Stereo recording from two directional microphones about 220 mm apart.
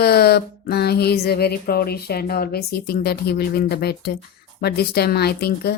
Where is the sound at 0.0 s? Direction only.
45° left (ahead or behind).